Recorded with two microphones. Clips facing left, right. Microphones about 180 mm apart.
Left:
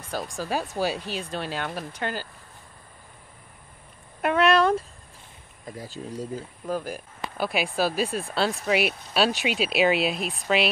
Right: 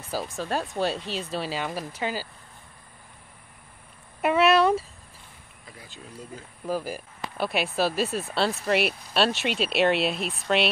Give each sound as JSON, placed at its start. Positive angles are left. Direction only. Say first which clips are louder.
{"t": 0.1, "sound": "speech", "louder": "even", "side_deg": -5}
{"t": 4.2, "sound": "a sound", "louder": "right 1 dB", "side_deg": -5}
{"t": 5.7, "sound": "speech", "louder": "left 10 dB", "side_deg": 40}
{"t": 6.7, "sound": "speech", "louder": "even", "side_deg": -5}